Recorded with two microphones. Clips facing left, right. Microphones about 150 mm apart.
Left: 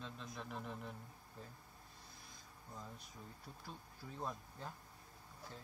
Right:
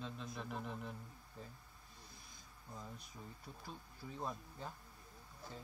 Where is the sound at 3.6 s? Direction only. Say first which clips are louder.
Right 2 dB; centre (ahead or behind).